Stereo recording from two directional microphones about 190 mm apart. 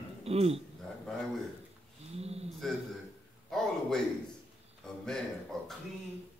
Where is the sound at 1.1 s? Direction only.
5° left (ahead or behind).